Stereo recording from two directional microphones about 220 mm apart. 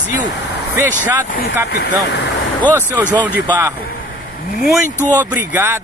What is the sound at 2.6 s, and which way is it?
Speech, 10° right (ahead or behind).